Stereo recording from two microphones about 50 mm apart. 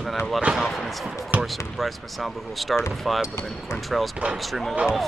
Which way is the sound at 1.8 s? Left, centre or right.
Centre.